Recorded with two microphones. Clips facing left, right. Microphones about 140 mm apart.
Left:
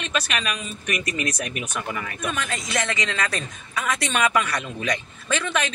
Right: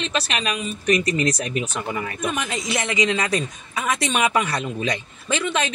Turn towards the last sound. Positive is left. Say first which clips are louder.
# right 2 dB
turn(degrees=-20)  # may be behind; listen again after turning